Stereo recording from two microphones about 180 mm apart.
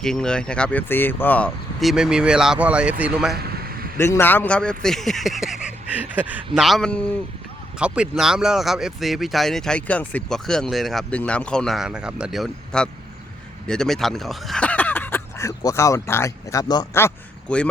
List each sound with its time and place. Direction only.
0.0 s speech: 5° left (ahead or behind)
3.4 s a sound: 55° right (ahead or behind)
3.9 s speech: 15° left (ahead or behind)
7.8 s speech: 5° right (ahead or behind); by 17.1 s 20° left (ahead or behind)
17.5 s speech: 5° left (ahead or behind)